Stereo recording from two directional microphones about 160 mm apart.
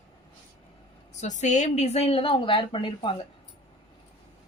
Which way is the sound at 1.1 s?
45° left (ahead or behind).